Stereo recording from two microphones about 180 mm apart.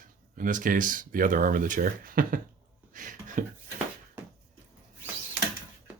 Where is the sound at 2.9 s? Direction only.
45° right (ahead or behind).